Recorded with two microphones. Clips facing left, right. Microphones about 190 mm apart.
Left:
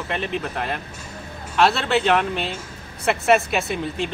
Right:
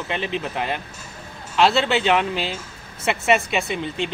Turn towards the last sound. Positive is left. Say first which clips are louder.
# even
turn(degrees=0)  # may be behind; listen again after turning